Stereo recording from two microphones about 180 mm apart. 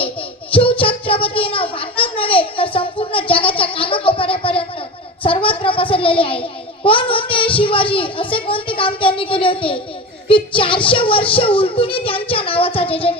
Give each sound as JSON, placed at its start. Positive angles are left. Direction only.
{"t": 0.0, "sound": "a sound", "side_deg": 30}
{"t": 5.2, "sound": "child singing", "side_deg": 30}
{"t": 6.8, "sound": "a child's voice", "side_deg": 30}